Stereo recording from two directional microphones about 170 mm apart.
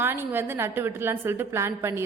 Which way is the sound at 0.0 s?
15° right (ahead or behind).